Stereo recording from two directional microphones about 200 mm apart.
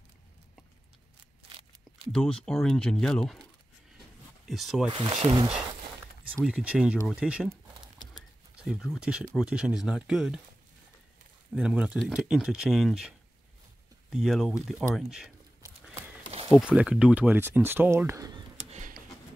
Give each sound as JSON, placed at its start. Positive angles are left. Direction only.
{"t": 2.1, "sound": "speech", "side_deg": 5}
{"t": 4.5, "sound": "speech", "side_deg": 0}
{"t": 4.9, "sound": "speech", "side_deg": -25}
{"t": 6.3, "sound": "speech", "side_deg": -5}
{"t": 8.5, "sound": "speech", "side_deg": 0}
{"t": 11.5, "sound": "speech", "side_deg": -5}
{"t": 14.1, "sound": "speech", "side_deg": 0}
{"t": 16.5, "sound": "speech", "side_deg": -5}
{"t": 18.7, "sound": "a sound", "side_deg": -40}